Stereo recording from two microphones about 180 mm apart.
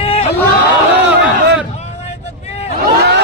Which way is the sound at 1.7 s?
35° left (ahead or behind).